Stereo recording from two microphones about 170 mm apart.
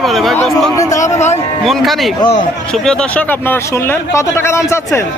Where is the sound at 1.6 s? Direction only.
Centre (ahead or behind); by 5.0 s 15° left (ahead or behind).